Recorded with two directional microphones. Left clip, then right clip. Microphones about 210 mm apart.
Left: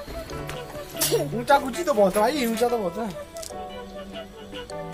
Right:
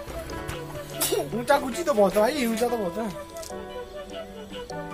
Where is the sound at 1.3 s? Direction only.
Centre (ahead or behind).